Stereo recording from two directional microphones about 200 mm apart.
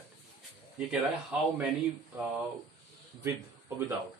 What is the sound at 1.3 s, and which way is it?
Speech, 5° right (ahead or behind).